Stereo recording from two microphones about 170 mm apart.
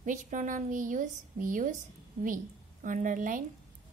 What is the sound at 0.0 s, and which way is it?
A woman's voice, 50° right (ahead or behind).